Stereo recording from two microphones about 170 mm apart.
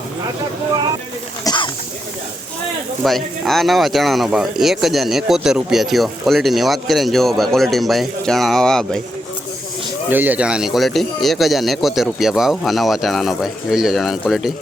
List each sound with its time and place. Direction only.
1.5 s a sound: 30° left (ahead or behind)
3.0 s speech: centre (ahead or behind)
10.1 s speech: 10° right (ahead or behind)